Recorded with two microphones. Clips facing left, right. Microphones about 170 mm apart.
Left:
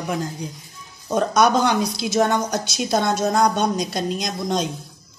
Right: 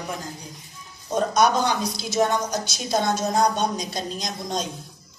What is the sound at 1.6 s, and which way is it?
Speech, 65° left (ahead or behind).